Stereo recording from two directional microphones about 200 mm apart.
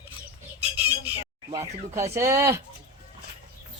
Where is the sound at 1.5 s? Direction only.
15° right (ahead or behind).